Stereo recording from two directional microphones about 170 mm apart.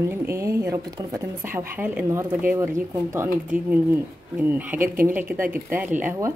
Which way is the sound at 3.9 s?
10° right (ahead or behind).